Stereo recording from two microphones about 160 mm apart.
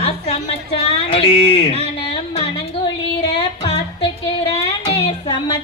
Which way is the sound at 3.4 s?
35° left (ahead or behind).